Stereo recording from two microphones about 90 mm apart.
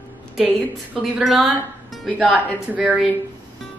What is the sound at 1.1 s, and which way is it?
Speech, 5° right (ahead or behind).